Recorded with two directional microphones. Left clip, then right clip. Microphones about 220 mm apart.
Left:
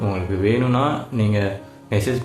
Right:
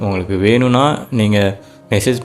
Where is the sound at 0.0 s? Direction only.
45° right (ahead or behind).